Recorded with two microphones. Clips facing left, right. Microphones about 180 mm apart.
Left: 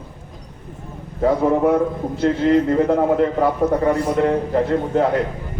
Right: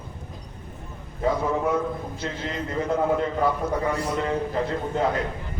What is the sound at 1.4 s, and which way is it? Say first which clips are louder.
A man's voice: left 8 dB; 55° left (ahead or behind).